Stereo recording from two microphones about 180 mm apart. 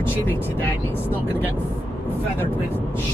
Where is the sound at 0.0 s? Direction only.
10° left (ahead or behind).